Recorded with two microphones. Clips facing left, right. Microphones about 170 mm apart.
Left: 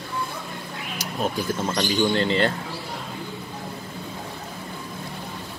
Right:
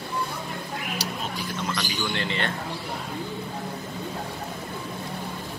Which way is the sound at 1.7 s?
25° left (ahead or behind).